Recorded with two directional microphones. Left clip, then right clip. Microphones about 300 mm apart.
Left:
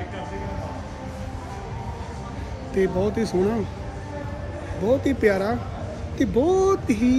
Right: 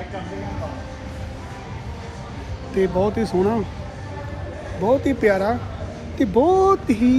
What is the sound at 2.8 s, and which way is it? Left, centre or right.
Speech, centre.